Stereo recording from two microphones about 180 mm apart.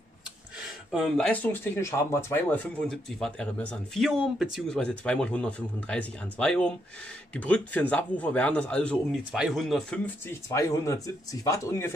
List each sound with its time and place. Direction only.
0.9 s speech: centre (ahead or behind)